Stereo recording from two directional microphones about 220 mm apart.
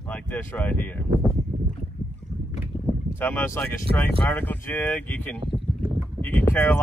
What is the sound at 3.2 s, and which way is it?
Speech, 10° left (ahead or behind).